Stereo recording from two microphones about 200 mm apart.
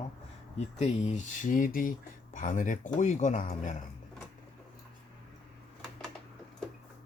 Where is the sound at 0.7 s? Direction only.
35° left (ahead or behind).